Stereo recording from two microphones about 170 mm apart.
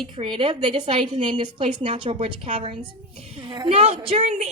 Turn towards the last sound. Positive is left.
turn(degrees=-35)  # may be behind; listen again after turning